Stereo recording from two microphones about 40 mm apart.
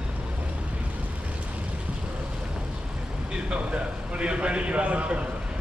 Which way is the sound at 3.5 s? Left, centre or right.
Right.